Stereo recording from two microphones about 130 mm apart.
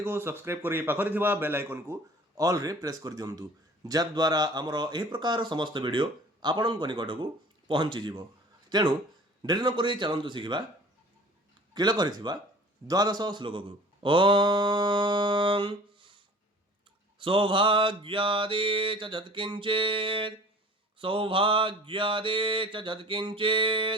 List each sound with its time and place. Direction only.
0.0 s a man's voice: 15° right (ahead or behind); by 10.6 s 35° right (ahead or behind)
11.7 s speech: 35° right (ahead or behind)